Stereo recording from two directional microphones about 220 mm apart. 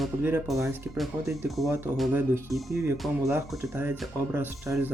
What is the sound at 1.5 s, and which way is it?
Speech, centre (ahead or behind).